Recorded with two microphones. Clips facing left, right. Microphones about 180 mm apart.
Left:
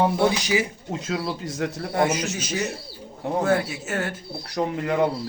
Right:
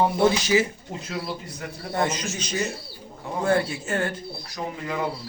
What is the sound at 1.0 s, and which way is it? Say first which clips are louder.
Speech: left 4 dB; 90° left.